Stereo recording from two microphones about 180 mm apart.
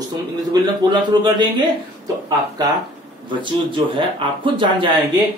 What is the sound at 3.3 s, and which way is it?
Speech, 25° right (ahead or behind).